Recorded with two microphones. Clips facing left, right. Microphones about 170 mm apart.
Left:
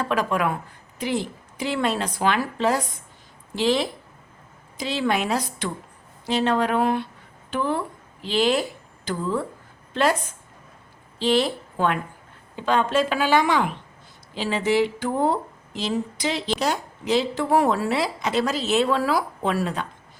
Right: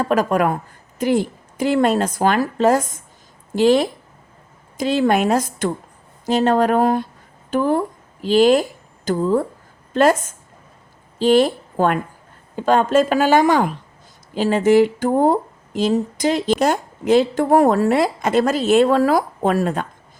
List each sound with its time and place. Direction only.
0.0 s a woman's voice: 45° right (ahead or behind)